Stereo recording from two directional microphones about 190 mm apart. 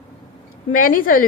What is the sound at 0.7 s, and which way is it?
Speech, 45° left (ahead or behind).